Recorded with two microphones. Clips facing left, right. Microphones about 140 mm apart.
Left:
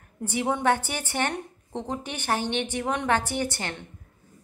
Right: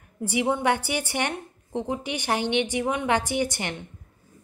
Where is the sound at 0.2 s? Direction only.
10° right (ahead or behind).